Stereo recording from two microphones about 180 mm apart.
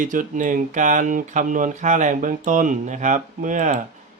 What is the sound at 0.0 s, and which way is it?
A man's voice, 45° right (ahead or behind).